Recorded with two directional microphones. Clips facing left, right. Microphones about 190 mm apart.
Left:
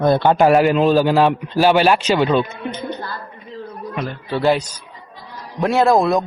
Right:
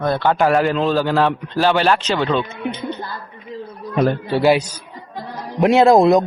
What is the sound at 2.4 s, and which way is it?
Speech, 25° right (ahead or behind).